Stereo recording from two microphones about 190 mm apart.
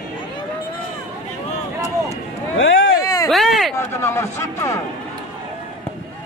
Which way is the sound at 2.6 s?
85° left.